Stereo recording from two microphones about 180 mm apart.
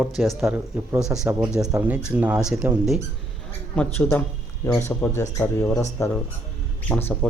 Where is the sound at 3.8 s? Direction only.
10° left (ahead or behind).